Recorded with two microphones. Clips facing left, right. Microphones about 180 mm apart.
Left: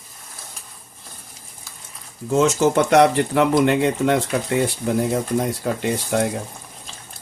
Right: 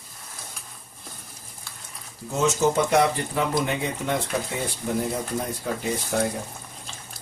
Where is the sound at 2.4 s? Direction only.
90° left.